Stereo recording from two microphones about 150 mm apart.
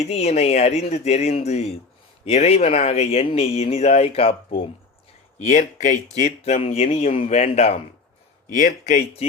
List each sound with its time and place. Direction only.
0.0 s speech: 45° left (ahead or behind)
5.5 s speech: 55° left (ahead or behind)
8.4 s speech: 60° left (ahead or behind)